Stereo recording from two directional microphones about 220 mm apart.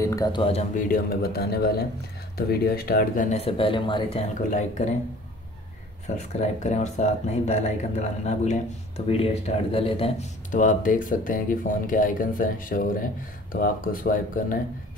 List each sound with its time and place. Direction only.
0.0 s speech: 15° left (ahead or behind); by 4.9 s 30° left (ahead or behind)
6.0 s speech: 30° left (ahead or behind)